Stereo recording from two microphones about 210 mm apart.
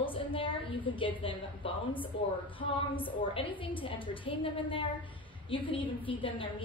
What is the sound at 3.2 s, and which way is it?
A woman's voice, 25° left (ahead or behind).